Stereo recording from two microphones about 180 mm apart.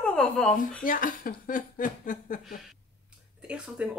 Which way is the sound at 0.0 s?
5° left (ahead or behind).